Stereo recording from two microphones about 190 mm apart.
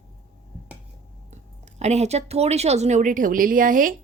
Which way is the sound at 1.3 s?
35° right (ahead or behind).